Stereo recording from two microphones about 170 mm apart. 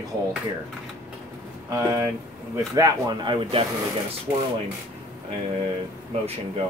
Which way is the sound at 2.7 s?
20° right (ahead or behind).